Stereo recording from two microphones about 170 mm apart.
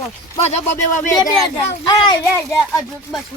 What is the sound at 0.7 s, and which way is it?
Speech, 45° left (ahead or behind).